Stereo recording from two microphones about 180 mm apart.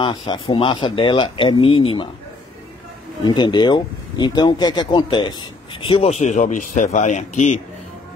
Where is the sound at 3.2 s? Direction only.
25° left (ahead or behind).